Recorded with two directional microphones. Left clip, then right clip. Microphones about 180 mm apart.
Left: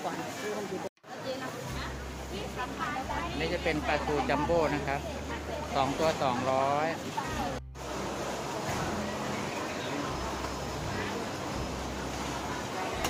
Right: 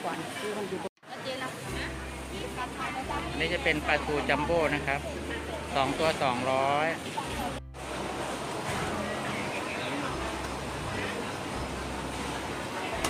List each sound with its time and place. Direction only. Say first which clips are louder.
3.3 s speech: right 4 dB; 5° left (ahead or behind)